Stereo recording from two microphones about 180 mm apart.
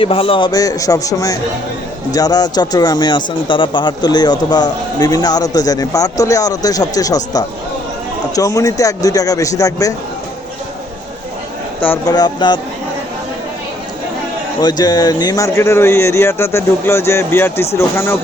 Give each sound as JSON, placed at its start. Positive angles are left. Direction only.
{"t": 0.0, "sound": "a man's voice", "side_deg": 30}
{"t": 12.0, "sound": "a man's voice", "side_deg": 25}
{"t": 14.6, "sound": "speech", "side_deg": 25}